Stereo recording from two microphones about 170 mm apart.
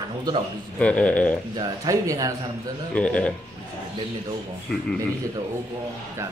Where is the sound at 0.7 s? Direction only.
5° left (ahead or behind).